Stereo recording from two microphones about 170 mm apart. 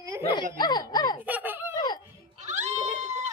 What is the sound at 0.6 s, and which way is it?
Speech, 25° left (ahead or behind).